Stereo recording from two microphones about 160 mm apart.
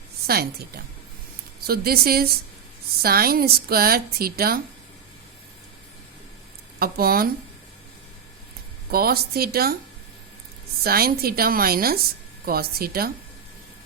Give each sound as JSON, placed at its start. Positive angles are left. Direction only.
{"t": 0.3, "sound": "speech", "side_deg": -75}
{"t": 6.7, "sound": "speech", "side_deg": -70}
{"t": 8.9, "sound": "speech", "side_deg": -70}
{"t": 10.8, "sound": "speech", "side_deg": -70}